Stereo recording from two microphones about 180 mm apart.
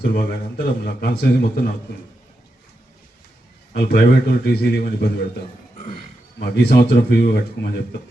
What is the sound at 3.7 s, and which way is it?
A man's voice, 65° left (ahead or behind).